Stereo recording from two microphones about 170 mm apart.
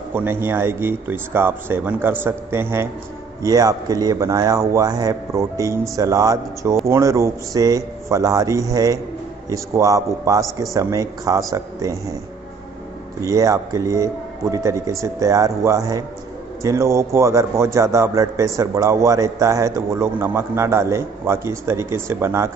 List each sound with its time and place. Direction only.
0.1 s a man's voice: 15° right (ahead or behind)
13.2 s a man's voice: 20° right (ahead or behind)